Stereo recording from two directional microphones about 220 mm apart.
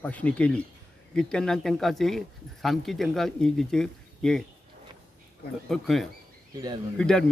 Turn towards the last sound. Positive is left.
turn(degrees=5)  # may be behind; listen again after turning